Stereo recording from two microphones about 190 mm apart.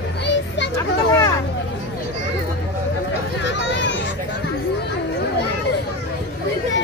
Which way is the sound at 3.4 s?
70° left (ahead or behind).